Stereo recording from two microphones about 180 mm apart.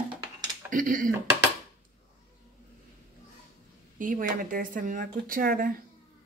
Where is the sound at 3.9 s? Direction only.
50° right (ahead or behind).